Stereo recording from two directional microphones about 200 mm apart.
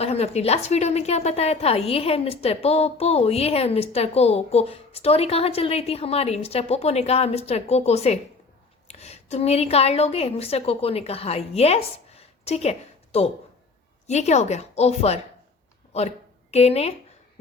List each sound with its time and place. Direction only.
0.0 s a woman's voice: 30° left (ahead or behind)